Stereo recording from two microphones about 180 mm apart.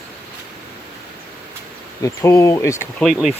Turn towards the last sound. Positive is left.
turn(degrees=0)  # may be behind; listen again after turning